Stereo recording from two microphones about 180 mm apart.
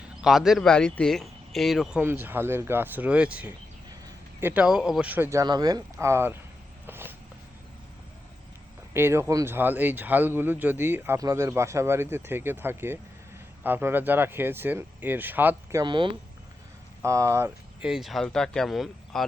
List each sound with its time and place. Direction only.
0.2 s a man's voice: centre (ahead or behind)
6.8 s a sound: 10° right (ahead or behind)
8.9 s speech: 15° right (ahead or behind)
15.8 s speech: 25° right (ahead or behind); by 19.2 s centre (ahead or behind)